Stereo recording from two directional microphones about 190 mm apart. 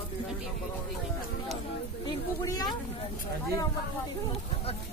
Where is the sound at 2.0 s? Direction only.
20° left (ahead or behind).